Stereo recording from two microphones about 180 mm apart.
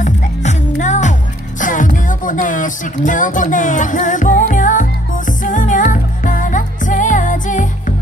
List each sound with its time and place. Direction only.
0.0 s music: 40° left (ahead or behind)